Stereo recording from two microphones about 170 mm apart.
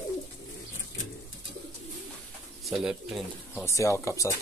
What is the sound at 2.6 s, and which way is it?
Speech, centre (ahead or behind).